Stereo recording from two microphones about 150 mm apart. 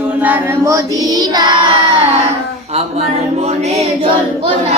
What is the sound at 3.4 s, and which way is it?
Music, 45° right (ahead or behind).